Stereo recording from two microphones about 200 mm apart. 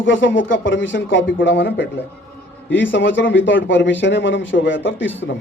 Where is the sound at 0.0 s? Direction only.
70° left (ahead or behind).